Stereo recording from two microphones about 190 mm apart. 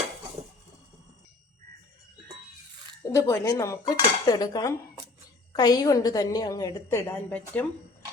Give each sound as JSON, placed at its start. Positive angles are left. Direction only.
{"t": 3.1, "sound": "dishes", "side_deg": 15}
{"t": 5.5, "sound": "a woman's voice", "side_deg": 20}